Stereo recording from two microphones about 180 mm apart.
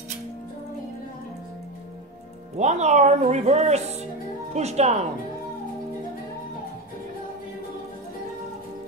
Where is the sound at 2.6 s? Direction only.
40° right (ahead or behind).